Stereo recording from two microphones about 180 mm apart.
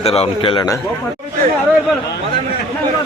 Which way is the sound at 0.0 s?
35° left (ahead or behind).